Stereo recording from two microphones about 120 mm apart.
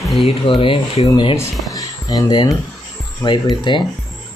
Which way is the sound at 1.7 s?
30° left (ahead or behind).